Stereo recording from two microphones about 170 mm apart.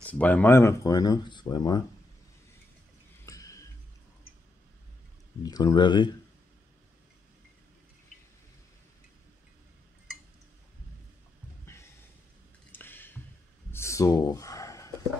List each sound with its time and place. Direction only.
0.0 s speech: 10° left (ahead or behind)
3.3 s music: 20° left (ahead or behind)
5.4 s speech: 20° left (ahead or behind)
12.7 s a sound: 10° left (ahead or behind)